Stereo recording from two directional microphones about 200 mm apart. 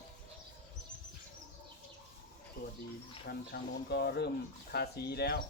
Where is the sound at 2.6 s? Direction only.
55° left (ahead or behind).